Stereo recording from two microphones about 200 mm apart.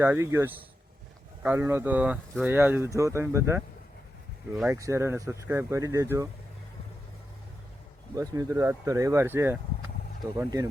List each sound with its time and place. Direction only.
0.0 s speech: 15° right (ahead or behind)
4.7 s speech: 15° right (ahead or behind)
8.1 s speech: 15° right (ahead or behind)